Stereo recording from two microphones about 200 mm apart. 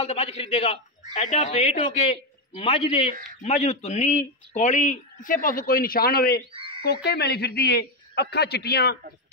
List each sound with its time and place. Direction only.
0.0 s a man's voice: 30° left (ahead or behind); by 6.4 s 50° left (ahead or behind)
6.5 s a sound: 25° right (ahead or behind)
6.8 s a man's voice: 55° left (ahead or behind)